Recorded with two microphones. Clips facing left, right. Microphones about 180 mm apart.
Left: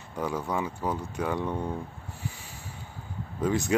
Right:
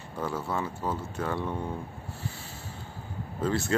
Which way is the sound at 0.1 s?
15° left (ahead or behind).